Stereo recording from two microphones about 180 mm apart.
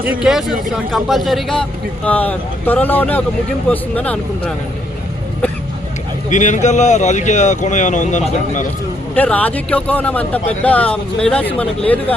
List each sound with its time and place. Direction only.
0.0 s speech: 5° right (ahead or behind)
6.3 s speech: 45° left (ahead or behind)
9.1 s speech: 10° left (ahead or behind)